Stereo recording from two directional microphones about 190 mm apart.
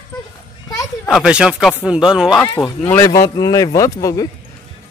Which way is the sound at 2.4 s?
10° left (ahead or behind).